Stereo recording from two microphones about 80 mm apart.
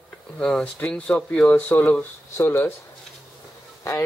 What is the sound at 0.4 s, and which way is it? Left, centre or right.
Speech, centre.